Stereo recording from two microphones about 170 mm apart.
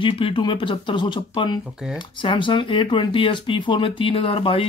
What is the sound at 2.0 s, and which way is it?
Speech, 30° left (ahead or behind).